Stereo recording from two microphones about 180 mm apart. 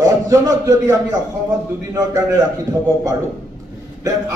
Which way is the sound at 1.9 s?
20° right (ahead or behind).